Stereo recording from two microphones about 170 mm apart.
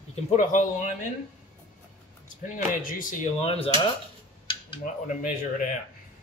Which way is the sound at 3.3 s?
35° left (ahead or behind).